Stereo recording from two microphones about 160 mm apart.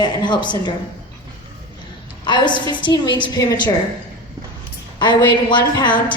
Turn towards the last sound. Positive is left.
turn(degrees=30)  # may be behind; listen again after turning